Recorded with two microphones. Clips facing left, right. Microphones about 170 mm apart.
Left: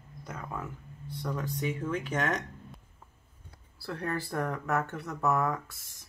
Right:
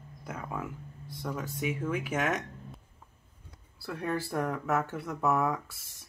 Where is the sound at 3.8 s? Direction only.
5° right (ahead or behind).